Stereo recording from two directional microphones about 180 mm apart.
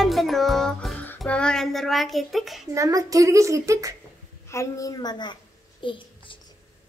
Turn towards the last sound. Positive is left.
turn(degrees=25)  # may be behind; listen again after turning